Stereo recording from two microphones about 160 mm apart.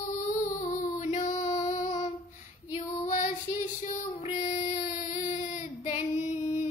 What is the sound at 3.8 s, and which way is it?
Child singing, 40° left (ahead or behind).